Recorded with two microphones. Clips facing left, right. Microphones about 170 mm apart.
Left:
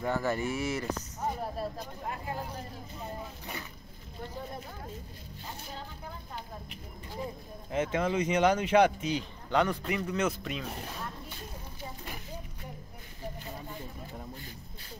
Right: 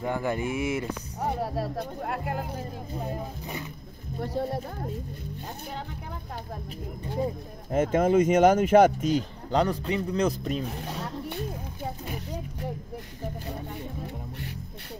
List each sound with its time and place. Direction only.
0.0 s speech: 15° right (ahead or behind)
1.2 s speech: 75° right (ahead or behind)
4.3 s speech: 75° right (ahead or behind)
7.7 s speech: 50° right (ahead or behind)
11.0 s a sound: 75° right (ahead or behind)